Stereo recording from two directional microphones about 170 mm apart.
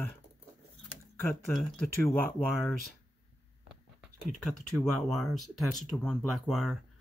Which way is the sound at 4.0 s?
Centre (ahead or behind).